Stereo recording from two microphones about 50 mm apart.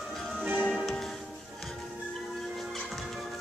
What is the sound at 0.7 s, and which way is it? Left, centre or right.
Music, centre.